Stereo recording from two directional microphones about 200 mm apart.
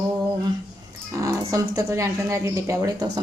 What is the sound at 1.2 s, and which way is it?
A woman's voice, 15° right (ahead or behind).